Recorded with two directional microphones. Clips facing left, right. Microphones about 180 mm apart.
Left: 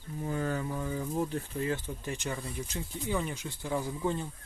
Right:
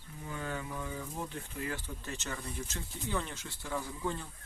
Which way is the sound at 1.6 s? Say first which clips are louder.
Left 5 dB; 20° left (ahead or behind).